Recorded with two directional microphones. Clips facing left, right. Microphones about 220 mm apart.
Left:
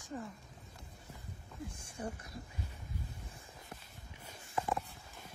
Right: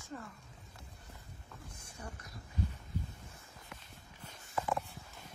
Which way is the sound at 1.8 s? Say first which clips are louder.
Left 5 dB; 25° left (ahead or behind).